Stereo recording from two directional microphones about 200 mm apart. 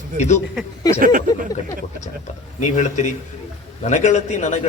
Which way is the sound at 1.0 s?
45° right (ahead or behind).